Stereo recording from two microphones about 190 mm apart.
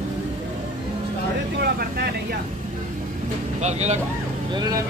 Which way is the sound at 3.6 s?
35° right (ahead or behind).